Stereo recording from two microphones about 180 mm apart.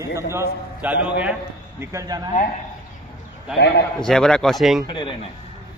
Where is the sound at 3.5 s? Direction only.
75° left (ahead or behind).